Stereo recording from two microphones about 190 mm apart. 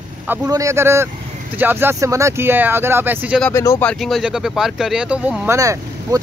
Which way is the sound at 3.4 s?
15° left (ahead or behind).